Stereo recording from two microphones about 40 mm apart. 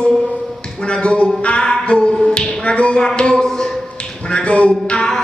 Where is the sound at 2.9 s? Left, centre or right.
Centre.